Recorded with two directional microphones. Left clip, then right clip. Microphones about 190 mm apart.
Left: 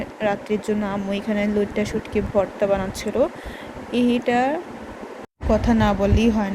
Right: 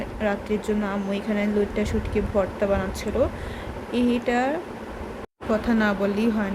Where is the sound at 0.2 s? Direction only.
15° left (ahead or behind).